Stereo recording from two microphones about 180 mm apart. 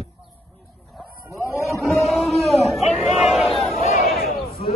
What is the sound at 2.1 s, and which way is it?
Chatter, centre (ahead or behind).